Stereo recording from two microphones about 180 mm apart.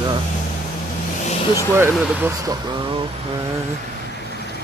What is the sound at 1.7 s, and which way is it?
Speech, 10° right (ahead or behind).